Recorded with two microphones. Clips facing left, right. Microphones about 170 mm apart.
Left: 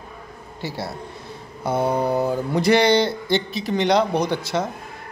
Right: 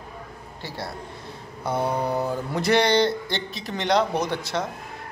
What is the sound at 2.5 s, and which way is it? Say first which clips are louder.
A man's voice: left 3 dB; centre (ahead or behind).